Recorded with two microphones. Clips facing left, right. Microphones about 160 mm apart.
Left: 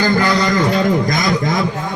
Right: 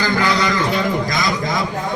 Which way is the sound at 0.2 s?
40° left (ahead or behind).